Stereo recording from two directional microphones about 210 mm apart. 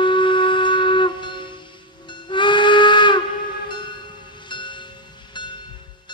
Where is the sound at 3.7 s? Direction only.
20° left (ahead or behind).